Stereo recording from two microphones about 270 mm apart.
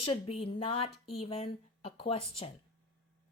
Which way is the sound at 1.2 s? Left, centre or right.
Left.